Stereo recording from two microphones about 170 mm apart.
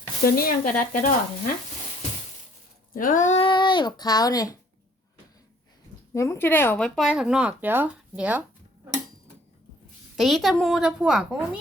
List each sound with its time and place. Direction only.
0.3 s speech: 60° left (ahead or behind)
0.8 s a sound: 55° left (ahead or behind)
2.9 s a sound: 50° left (ahead or behind)
3.4 s a child's voice: 30° left (ahead or behind)
6.1 s speech: 15° left (ahead or behind); by 8.4 s 10° right (ahead or behind)
10.2 s speech: centre (ahead or behind)